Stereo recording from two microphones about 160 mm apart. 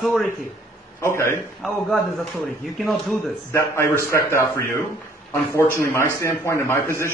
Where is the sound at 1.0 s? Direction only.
15° left (ahead or behind).